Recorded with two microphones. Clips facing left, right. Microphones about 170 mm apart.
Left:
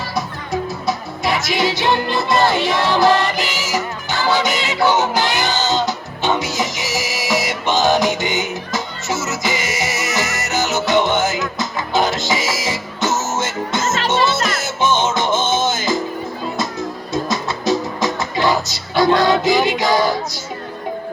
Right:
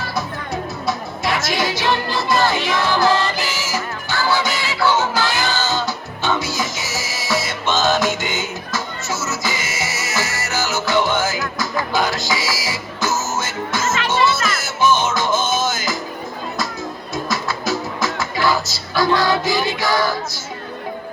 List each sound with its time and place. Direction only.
0.9 s music: 20° left (ahead or behind)
17.2 s music: 20° left (ahead or behind)